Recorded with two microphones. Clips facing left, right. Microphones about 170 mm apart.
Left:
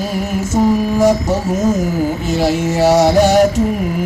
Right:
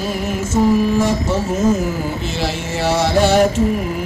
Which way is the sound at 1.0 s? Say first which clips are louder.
Left 4 dB; 40° left (ahead or behind).